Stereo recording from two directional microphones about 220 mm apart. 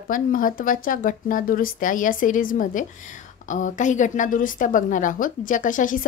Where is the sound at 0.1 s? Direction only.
40° left (ahead or behind).